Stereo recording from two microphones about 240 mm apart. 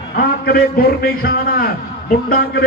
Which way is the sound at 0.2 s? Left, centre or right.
Left.